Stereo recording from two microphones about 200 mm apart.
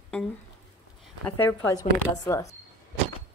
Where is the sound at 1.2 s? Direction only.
15° left (ahead or behind).